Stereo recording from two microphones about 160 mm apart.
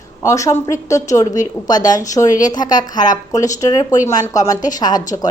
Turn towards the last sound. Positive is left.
turn(degrees=25)  # may be behind; listen again after turning